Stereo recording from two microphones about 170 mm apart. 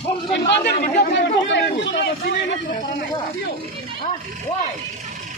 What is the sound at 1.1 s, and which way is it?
Speech, 90° left.